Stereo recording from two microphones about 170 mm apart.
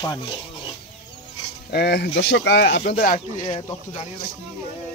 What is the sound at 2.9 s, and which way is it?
Speech, 50° left (ahead or behind).